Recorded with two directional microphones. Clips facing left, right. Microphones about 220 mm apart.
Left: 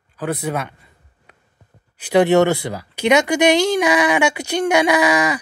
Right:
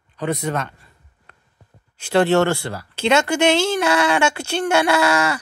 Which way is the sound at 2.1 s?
20° left (ahead or behind).